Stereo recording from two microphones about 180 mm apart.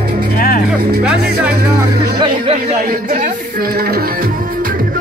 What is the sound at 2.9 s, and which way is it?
Music, 50° right (ahead or behind).